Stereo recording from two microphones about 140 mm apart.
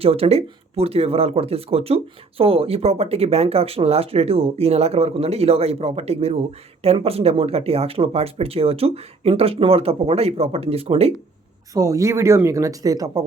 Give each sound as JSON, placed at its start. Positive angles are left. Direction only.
{"t": 0.0, "sound": "speech", "side_deg": -45}
{"t": 11.7, "sound": "speech", "side_deg": -25}